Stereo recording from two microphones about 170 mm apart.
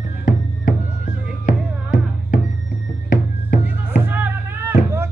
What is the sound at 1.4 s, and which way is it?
Music, 50° left (ahead or behind).